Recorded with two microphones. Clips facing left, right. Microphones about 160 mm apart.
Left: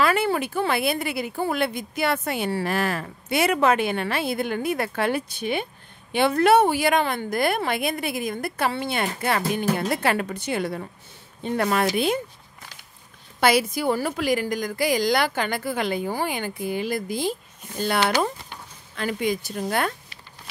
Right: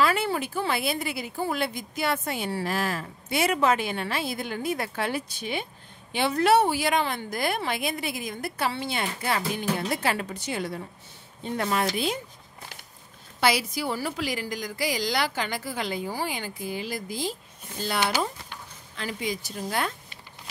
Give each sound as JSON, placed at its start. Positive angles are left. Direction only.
{"t": 0.0, "sound": "speech", "side_deg": 60}
{"t": 13.4, "sound": "speech", "side_deg": 55}